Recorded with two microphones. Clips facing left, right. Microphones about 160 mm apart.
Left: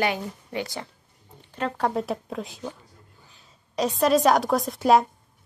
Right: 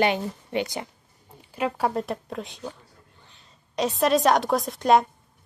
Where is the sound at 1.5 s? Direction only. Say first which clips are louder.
Even; 10° right (ahead or behind).